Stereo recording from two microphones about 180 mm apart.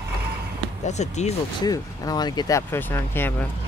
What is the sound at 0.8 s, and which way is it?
Speech, 40° left (ahead or behind).